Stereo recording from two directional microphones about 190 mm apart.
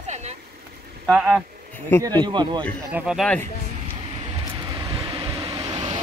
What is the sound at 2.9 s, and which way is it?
Speech, 5° right (ahead or behind).